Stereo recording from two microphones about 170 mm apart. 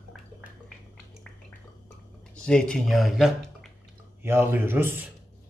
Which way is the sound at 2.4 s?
5° left (ahead or behind).